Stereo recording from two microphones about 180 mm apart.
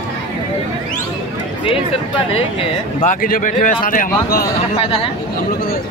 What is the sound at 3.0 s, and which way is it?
A man's voice, 50° left (ahead or behind).